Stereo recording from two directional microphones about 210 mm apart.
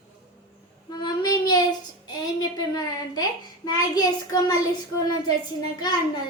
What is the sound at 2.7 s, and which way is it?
A child's voice, 20° left (ahead or behind).